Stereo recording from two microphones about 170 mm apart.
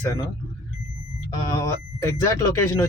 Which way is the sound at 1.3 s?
20° left (ahead or behind).